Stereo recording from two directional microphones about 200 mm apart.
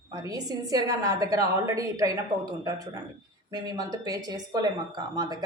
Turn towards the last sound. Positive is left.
turn(degrees=-20)  # may be behind; listen again after turning